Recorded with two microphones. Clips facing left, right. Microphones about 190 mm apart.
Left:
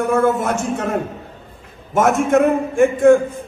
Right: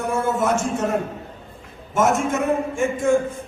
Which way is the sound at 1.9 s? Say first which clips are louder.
Left 5 dB; 60° left (ahead or behind).